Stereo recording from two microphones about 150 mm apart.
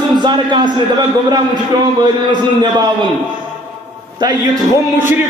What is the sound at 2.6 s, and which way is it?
Speech, 30° right (ahead or behind).